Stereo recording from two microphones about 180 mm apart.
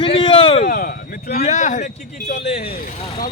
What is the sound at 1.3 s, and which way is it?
Speech, 40° left (ahead or behind).